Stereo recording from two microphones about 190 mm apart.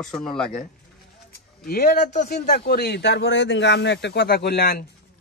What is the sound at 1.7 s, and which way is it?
A man's voice, 55° left (ahead or behind).